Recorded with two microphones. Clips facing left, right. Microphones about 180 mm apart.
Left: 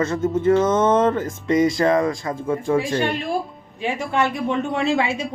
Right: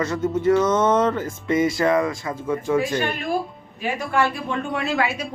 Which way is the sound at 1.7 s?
20° left (ahead or behind).